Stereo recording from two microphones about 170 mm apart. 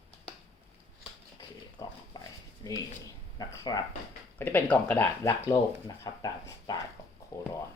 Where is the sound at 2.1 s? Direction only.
20° left (ahead or behind).